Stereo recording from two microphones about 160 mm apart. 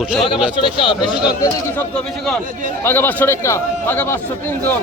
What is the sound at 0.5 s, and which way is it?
Speech, 30° left (ahead or behind).